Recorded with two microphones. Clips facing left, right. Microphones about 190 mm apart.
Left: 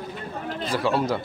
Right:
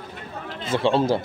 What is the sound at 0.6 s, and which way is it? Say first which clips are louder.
Speech: right 3 dB; 25° right (ahead or behind).